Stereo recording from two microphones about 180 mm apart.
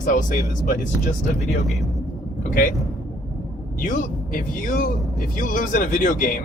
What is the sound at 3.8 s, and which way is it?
A man's voice, 50° left (ahead or behind).